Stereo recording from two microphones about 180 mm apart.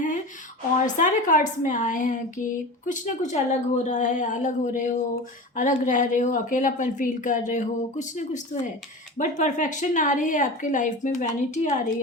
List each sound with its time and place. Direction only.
0.9 s a woman's voice: 45° left (ahead or behind)